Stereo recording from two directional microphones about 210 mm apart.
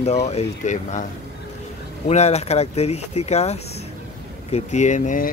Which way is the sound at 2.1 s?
30° left (ahead or behind).